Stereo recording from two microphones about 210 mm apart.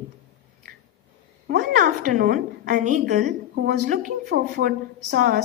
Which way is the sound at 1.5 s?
45° right (ahead or behind).